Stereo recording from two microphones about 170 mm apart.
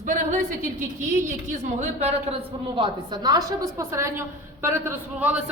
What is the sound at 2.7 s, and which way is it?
Speech, 30° right (ahead or behind).